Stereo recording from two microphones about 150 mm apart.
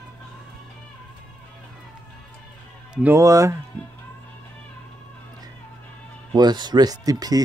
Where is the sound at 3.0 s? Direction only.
15° right (ahead or behind).